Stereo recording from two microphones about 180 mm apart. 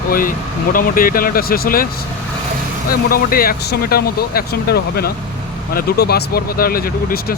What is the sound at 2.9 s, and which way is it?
Speech, 55° left (ahead or behind).